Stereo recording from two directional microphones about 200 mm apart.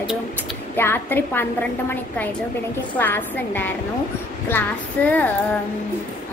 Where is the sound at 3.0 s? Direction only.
10° left (ahead or behind).